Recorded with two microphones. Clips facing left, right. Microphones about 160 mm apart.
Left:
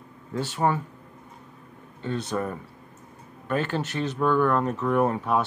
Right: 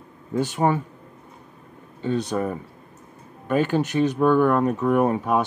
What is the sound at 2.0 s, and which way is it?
Speech, 15° right (ahead or behind).